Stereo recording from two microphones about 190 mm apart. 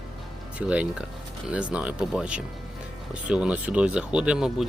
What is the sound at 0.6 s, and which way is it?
Speech, 5° right (ahead or behind).